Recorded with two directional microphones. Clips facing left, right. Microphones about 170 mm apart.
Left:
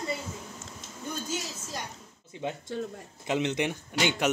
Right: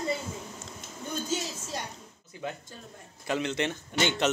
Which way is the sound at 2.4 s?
25° left (ahead or behind).